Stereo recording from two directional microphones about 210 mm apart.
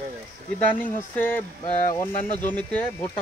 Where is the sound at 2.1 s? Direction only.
40° left (ahead or behind).